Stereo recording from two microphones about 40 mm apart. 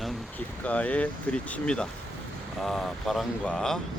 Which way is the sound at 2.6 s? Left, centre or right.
Centre.